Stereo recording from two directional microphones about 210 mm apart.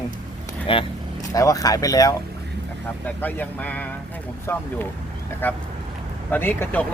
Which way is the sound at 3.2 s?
10° left (ahead or behind).